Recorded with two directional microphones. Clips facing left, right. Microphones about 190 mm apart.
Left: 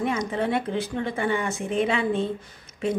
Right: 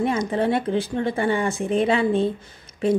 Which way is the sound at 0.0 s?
35° right (ahead or behind).